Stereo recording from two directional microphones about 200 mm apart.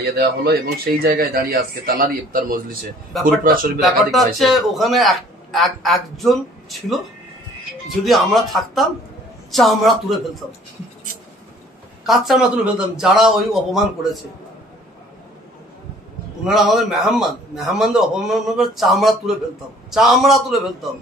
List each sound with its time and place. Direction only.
0.2 s a man's voice: 55° right (ahead or behind)
3.8 s a man's voice: centre (ahead or behind)
8.0 s a man's voice: centre (ahead or behind)
12.1 s a man's voice: centre (ahead or behind)
16.4 s a man's voice: centre (ahead or behind)